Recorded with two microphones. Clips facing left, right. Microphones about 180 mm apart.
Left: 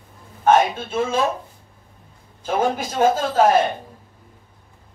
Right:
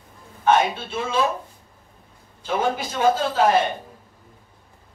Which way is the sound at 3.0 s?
45° left (ahead or behind).